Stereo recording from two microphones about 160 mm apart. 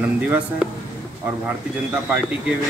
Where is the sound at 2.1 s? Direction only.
5° right (ahead or behind).